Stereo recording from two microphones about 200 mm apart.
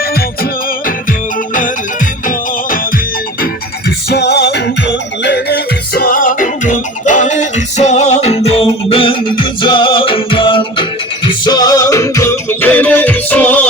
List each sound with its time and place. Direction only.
3.4 s music: 55° left (ahead or behind); by 13.7 s 5° left (ahead or behind)